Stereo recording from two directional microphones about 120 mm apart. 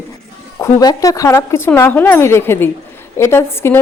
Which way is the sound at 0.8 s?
30° left (ahead or behind).